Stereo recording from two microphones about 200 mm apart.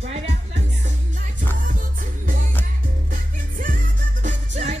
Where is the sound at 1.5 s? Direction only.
40° right (ahead or behind).